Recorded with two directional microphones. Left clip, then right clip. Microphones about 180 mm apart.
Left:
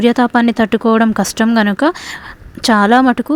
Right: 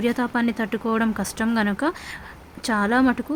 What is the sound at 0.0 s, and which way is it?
Speech, 35° left (ahead or behind).